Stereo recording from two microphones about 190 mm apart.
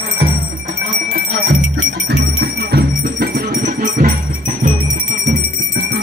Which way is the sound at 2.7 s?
55° right (ahead or behind).